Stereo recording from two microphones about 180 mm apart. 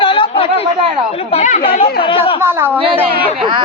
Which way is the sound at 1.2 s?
40° left (ahead or behind).